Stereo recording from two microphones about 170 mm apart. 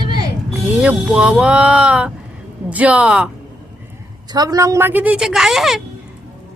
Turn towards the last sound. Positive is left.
turn(degrees=0)  # may be behind; listen again after turning